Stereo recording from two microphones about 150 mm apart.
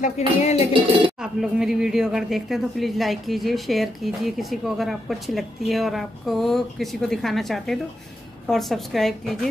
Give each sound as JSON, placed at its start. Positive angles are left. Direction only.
{"t": 0.4, "sound": "music", "side_deg": 45}
{"t": 1.2, "sound": "speech", "side_deg": -5}